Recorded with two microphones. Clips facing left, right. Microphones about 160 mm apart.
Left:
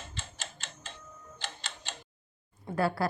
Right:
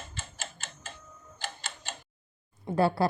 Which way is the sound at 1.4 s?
5° right (ahead or behind).